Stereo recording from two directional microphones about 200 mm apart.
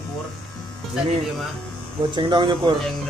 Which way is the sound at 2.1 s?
25° right (ahead or behind).